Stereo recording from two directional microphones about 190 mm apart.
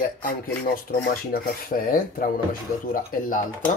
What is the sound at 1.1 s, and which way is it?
Speech, 50° left (ahead or behind).